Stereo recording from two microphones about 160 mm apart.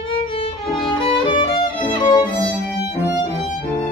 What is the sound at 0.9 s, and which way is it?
Music, 30° left (ahead or behind).